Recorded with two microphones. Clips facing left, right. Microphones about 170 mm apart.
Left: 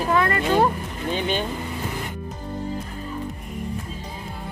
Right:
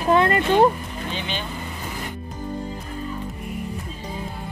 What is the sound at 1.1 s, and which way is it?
Vehicle, 50° left (ahead or behind).